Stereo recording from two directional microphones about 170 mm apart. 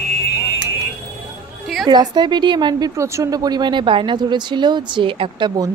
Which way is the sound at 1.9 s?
25° right (ahead or behind).